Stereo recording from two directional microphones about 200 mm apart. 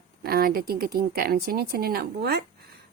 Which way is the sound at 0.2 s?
50° right (ahead or behind).